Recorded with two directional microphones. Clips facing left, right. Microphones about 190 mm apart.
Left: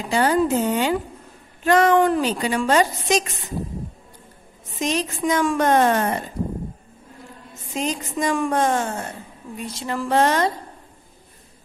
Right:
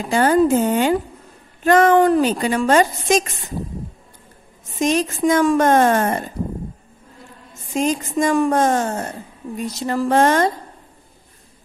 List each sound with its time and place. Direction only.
0.1 s a woman's voice: 50° right (ahead or behind)
4.7 s a woman's voice: 50° right (ahead or behind)
7.7 s a woman's voice: 45° right (ahead or behind)